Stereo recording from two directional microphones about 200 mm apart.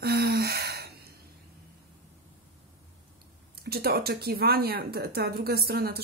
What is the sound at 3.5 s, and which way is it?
Speech, 50° right (ahead or behind).